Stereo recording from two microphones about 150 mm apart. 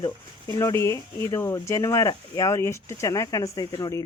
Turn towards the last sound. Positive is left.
turn(degrees=20)  # may be behind; listen again after turning